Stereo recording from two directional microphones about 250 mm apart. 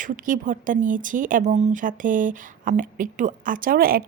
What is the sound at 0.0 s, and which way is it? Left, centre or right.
Speech, right.